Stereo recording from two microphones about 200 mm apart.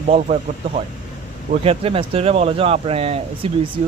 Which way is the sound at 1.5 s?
30° right (ahead or behind).